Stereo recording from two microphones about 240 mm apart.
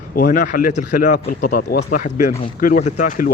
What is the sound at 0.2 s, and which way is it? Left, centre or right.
Speech, left.